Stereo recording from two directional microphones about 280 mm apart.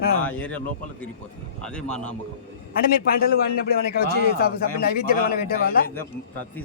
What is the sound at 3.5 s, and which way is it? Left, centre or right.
A man's voice, left.